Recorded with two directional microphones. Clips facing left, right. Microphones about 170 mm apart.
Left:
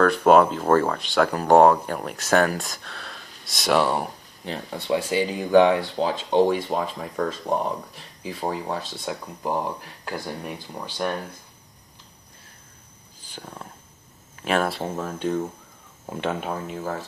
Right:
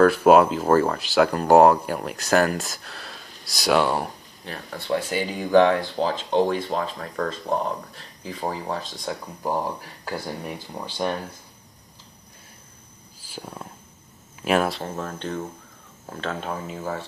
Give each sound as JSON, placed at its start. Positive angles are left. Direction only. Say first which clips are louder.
{"t": 0.0, "sound": "speech", "louder": "right 1 dB", "side_deg": -5}
{"t": 4.5, "sound": "speech", "louder": "left 3 dB", "side_deg": 20}
{"t": 4.9, "sound": "speech", "louder": "left 2 dB", "side_deg": 5}
{"t": 9.5, "sound": "speech", "louder": "even", "side_deg": -5}
{"t": 13.2, "sound": "speech", "louder": "right 2 dB", "side_deg": -5}
{"t": 15.0, "sound": "speech", "louder": "left 4 dB", "side_deg": 5}
{"t": 16.5, "sound": "speech", "louder": "left 1 dB", "side_deg": 0}